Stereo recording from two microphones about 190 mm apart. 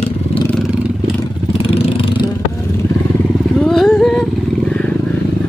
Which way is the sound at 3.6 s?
Centre (ahead or behind).